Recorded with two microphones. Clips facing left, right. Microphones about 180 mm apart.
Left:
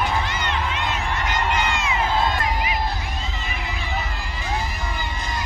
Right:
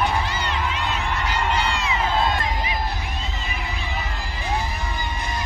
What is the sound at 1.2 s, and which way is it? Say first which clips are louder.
Run: left 1 dB; 35° right (ahead or behind).